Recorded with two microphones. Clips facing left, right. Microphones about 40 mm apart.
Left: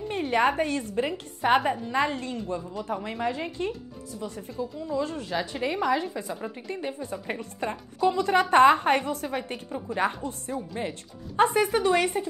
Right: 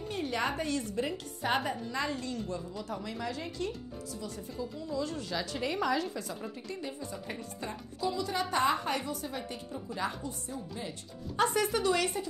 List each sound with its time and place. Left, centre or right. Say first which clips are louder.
0.1 s a woman's voice: left 9 dB; left
8.0 s a woman's voice: left 10 dB; left
11.3 s a woman's voice: left 7 dB; left